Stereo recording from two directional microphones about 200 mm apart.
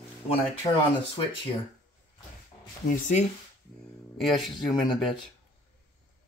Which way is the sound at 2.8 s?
40° left (ahead or behind).